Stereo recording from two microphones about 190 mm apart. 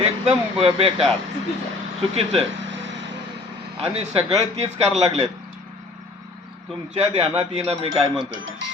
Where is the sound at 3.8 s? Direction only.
35° right (ahead or behind).